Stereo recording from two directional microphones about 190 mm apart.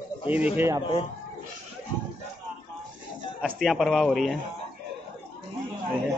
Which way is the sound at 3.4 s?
Centre (ahead or behind).